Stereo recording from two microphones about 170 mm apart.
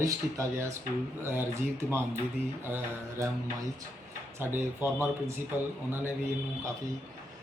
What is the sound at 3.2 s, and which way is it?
Speech, 20° right (ahead or behind).